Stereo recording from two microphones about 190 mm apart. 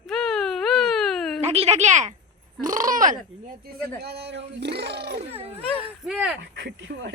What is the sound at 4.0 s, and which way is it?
Speech, 60° right (ahead or behind).